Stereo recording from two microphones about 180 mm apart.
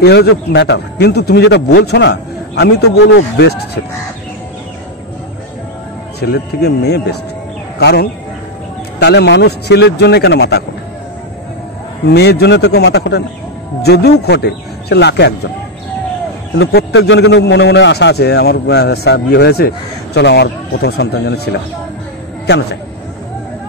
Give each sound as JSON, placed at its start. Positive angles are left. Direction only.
{"t": 0.0, "sound": "a man's voice", "side_deg": 70}
{"t": 6.1, "sound": "a man's voice", "side_deg": 65}
{"t": 12.1, "sound": "a man's voice", "side_deg": 65}
{"t": 16.5, "sound": "a man's voice", "side_deg": 75}